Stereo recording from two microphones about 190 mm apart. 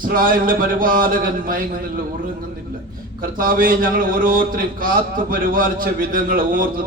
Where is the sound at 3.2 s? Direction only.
45° right (ahead or behind).